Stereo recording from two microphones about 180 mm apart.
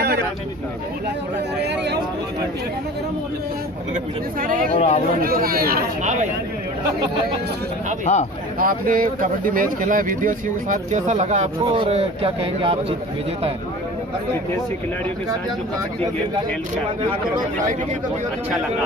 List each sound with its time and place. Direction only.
1.6 s speech: 70° right (ahead or behind)
3.9 s speech: 50° right (ahead or behind)
4.7 s a man's voice: 40° left (ahead or behind)
5.2 s speech: 55° right (ahead or behind)
8.0 s a man's voice: 40° left (ahead or behind)
8.5 s a man's voice: 50° right (ahead or behind); by 12.7 s 30° right (ahead or behind)